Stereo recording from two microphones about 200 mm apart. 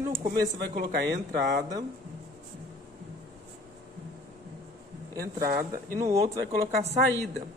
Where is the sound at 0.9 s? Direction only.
60° right (ahead or behind).